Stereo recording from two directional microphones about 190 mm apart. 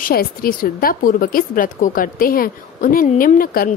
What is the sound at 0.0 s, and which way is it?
Speech, 50° left (ahead or behind).